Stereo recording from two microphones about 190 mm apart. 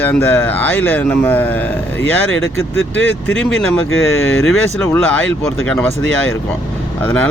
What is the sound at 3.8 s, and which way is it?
Speech, 90° left.